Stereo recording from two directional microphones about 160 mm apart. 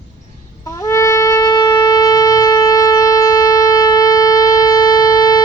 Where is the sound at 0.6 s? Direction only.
20° left (ahead or behind).